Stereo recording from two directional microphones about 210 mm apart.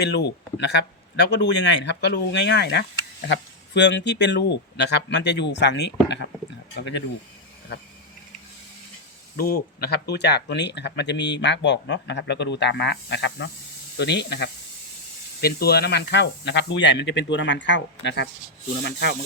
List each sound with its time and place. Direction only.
0.0 s speech: 55° left (ahead or behind)
9.4 s speech: 45° left (ahead or behind)